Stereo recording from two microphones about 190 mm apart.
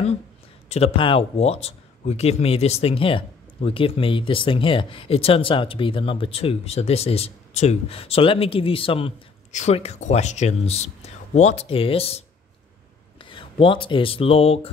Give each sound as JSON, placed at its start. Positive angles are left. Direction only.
{"t": 0.7, "sound": "speech", "side_deg": 30}